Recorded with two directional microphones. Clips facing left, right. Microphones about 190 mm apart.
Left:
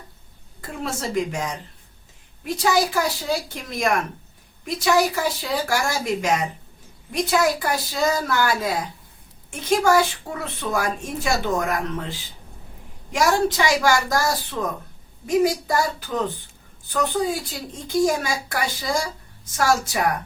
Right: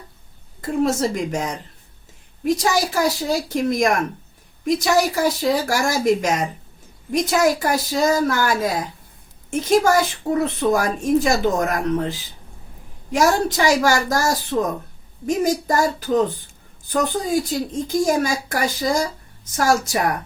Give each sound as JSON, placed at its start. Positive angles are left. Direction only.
{"t": 0.9, "sound": "speech", "side_deg": -40}
{"t": 2.6, "sound": "speech", "side_deg": -40}
{"t": 13.1, "sound": "speech", "side_deg": -45}